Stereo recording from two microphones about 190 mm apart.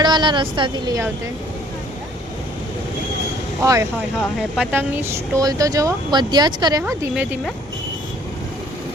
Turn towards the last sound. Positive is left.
turn(degrees=-5)  # may be behind; listen again after turning